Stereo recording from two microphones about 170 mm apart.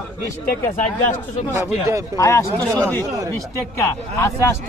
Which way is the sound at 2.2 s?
15° left (ahead or behind).